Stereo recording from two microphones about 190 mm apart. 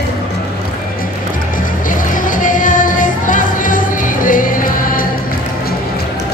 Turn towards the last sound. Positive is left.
turn(degrees=45)  # may be behind; listen again after turning